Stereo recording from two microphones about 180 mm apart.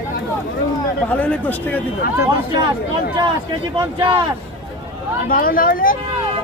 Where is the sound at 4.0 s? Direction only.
25° right (ahead or behind).